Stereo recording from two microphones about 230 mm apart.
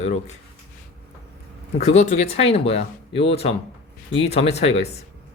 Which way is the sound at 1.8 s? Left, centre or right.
Left.